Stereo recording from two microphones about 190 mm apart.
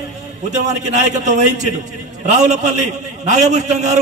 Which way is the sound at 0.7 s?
40° right (ahead or behind).